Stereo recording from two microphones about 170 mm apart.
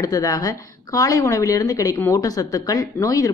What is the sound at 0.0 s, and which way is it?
A woman's voice, 20° left (ahead or behind).